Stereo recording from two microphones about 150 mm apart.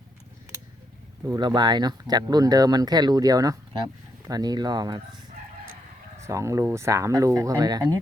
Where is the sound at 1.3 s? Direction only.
30° right (ahead or behind).